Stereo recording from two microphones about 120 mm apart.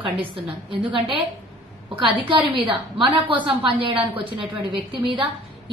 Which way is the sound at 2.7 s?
45° right (ahead or behind).